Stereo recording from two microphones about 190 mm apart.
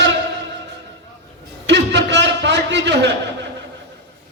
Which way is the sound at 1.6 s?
70° right (ahead or behind).